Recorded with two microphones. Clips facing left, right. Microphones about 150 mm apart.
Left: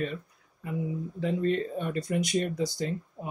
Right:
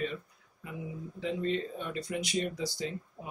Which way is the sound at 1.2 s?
50° left (ahead or behind).